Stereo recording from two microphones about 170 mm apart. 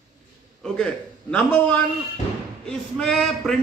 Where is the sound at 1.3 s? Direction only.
10° left (ahead or behind).